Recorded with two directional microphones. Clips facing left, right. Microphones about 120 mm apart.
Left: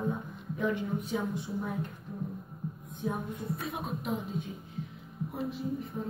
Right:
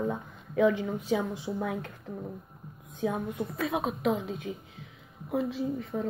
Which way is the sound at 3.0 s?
90° right.